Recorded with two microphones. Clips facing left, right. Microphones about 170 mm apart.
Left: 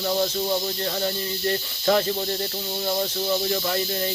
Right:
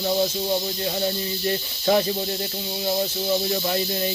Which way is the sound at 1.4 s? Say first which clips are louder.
Even; 20° right (ahead or behind).